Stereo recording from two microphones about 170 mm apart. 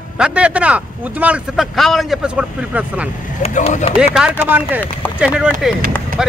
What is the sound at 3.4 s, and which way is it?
Speech, 40° left (ahead or behind).